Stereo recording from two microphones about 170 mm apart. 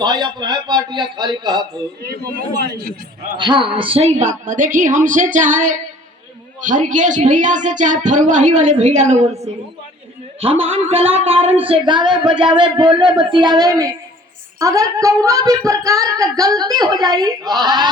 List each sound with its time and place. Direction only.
0.0 s speech: 25° right (ahead or behind)
2.6 s a man's voice: 60° right (ahead or behind)
3.3 s speech: 25° right (ahead or behind)
10.4 s speech: 30° right (ahead or behind)